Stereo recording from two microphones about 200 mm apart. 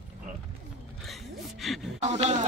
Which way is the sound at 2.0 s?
35° right (ahead or behind).